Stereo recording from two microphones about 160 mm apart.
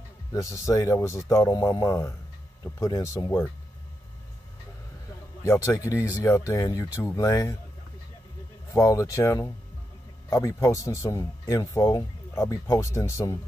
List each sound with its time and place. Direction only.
0.3 s speech: 20° left (ahead or behind)
5.7 s speech: 20° left (ahead or behind)
8.7 s speech: 20° left (ahead or behind)